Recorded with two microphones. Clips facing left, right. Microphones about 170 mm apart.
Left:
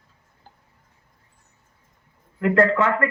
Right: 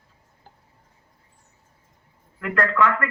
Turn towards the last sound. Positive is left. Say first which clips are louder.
# left 3 dB
turn(degrees=25)  # may be behind; listen again after turning